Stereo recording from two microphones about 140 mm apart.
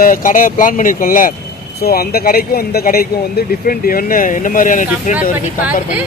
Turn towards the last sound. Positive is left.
turn(degrees=65)  # may be behind; listen again after turning